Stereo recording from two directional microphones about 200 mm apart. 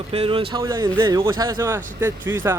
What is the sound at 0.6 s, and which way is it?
Speech, 15° right (ahead or behind).